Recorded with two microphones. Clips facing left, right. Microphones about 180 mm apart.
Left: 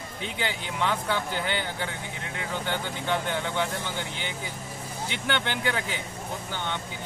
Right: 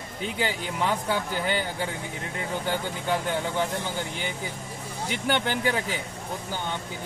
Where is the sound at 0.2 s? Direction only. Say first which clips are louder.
Right 3 dB; 40° right (ahead or behind).